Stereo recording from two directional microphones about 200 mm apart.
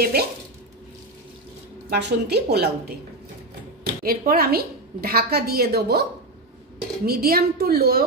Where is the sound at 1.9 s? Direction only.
55° right (ahead or behind).